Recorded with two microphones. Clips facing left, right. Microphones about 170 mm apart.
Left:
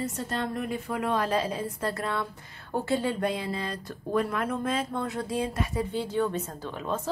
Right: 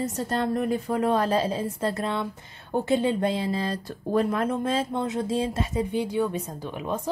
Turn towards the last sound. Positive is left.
turn(degrees=-15)  # may be behind; listen again after turning